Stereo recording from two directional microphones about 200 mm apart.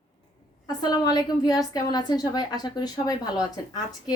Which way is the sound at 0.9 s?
20° left (ahead or behind).